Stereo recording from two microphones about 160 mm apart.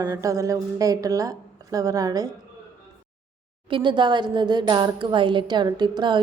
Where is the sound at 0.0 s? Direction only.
25° right (ahead or behind).